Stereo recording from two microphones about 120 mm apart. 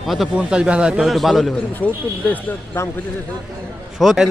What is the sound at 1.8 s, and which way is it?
Speech, 10° left (ahead or behind).